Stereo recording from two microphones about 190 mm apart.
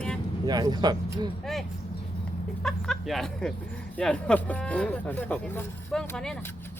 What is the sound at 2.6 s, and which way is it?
Speech, centre (ahead or behind).